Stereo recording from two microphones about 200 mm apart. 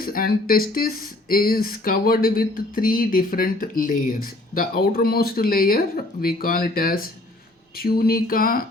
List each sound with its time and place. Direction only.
0.0 s speech: 45° left (ahead or behind)